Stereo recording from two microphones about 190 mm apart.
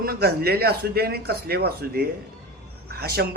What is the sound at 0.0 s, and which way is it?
Speech, 55° right (ahead or behind).